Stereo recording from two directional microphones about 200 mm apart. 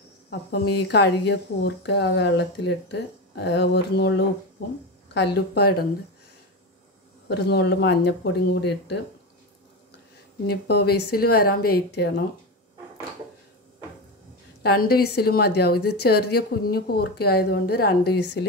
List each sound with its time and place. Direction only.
0.3 s a woman's voice: 55° left (ahead or behind)
7.2 s speech: 55° left (ahead or behind)
10.4 s a woman's voice: 50° left (ahead or behind)
14.6 s a woman's voice: 50° left (ahead or behind)